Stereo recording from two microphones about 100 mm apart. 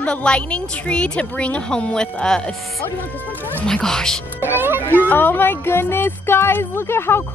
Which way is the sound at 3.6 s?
5° left (ahead or behind).